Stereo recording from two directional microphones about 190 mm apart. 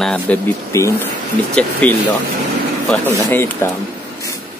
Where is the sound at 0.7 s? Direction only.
15° left (ahead or behind).